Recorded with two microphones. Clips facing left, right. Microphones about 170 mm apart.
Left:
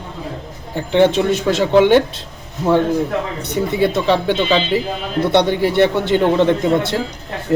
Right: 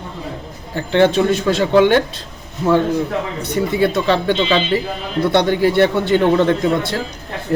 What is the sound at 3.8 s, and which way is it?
A man's voice, 20° left (ahead or behind).